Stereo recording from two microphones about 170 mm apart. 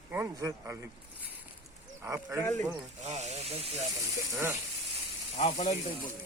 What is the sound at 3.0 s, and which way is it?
Speech, 40° right (ahead or behind).